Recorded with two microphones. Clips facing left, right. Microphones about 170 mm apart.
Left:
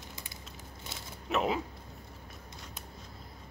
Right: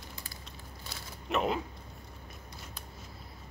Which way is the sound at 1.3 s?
Centre (ahead or behind).